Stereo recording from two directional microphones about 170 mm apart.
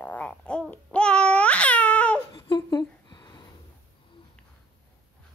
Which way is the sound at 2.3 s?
25° left (ahead or behind).